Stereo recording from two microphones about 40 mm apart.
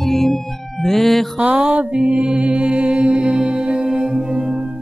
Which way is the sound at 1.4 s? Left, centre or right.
Right.